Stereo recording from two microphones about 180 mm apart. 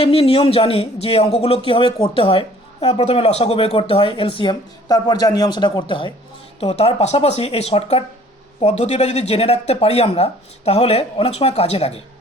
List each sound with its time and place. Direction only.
0.0 s speech: 30° left (ahead or behind)